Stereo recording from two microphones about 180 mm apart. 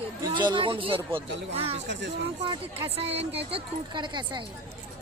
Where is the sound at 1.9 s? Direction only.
90° right.